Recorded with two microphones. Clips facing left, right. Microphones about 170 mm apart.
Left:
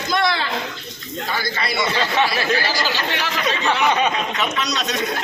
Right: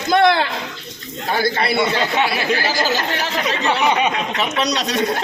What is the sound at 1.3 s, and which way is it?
Speech, 55° right (ahead or behind).